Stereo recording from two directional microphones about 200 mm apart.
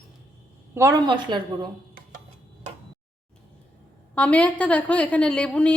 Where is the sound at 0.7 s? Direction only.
15° right (ahead or behind).